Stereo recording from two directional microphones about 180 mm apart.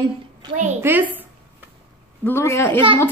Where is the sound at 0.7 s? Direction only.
10° right (ahead or behind).